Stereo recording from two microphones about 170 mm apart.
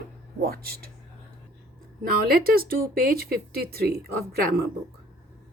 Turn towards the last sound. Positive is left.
turn(degrees=-65)  # may be behind; listen again after turning